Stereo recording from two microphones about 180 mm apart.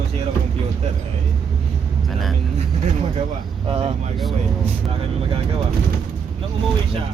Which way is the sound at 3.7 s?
30° right (ahead or behind).